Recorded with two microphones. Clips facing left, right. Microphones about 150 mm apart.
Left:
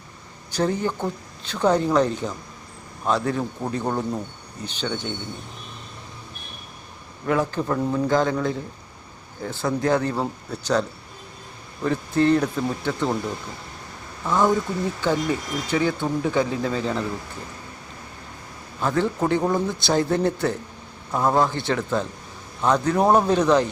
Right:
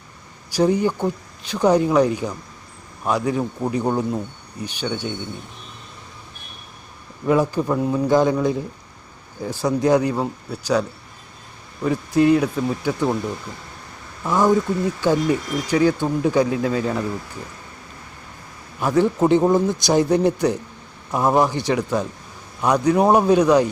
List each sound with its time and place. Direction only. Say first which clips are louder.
0.5 s speech: right 5 dB; 15° right (ahead or behind)
7.3 s speech: right 4 dB; 15° right (ahead or behind)
14.3 s speech: right 2 dB; 15° right (ahead or behind)
15.6 s speech: right 5 dB; 15° right (ahead or behind)
18.8 s speech: right 5 dB; 15° right (ahead or behind)